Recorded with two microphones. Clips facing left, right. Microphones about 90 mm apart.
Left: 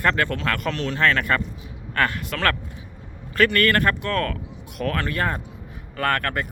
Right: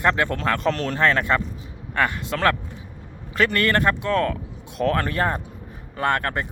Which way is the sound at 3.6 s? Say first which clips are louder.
Even; 25° right (ahead or behind).